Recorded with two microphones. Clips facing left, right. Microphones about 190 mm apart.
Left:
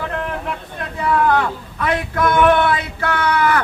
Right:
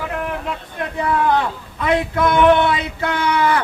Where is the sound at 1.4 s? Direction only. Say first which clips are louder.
Left 1 dB; 20° right (ahead or behind).